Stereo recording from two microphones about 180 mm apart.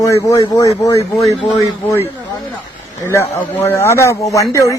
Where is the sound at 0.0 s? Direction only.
20° left (ahead or behind).